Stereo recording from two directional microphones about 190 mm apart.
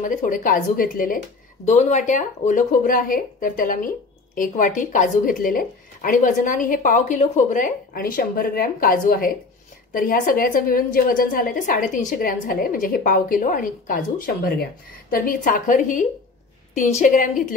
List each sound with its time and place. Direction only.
0.0 s a woman's voice: 40° left (ahead or behind)